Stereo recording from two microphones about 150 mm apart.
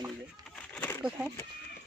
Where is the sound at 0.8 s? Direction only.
15° left (ahead or behind).